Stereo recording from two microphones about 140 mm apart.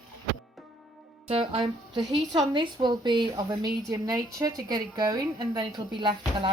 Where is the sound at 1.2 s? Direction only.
45° right (ahead or behind).